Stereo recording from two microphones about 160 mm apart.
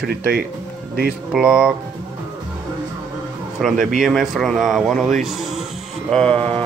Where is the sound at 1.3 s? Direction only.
5° right (ahead or behind).